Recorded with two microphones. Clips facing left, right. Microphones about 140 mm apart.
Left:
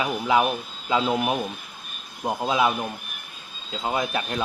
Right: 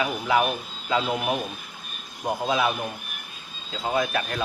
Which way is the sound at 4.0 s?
20° left (ahead or behind).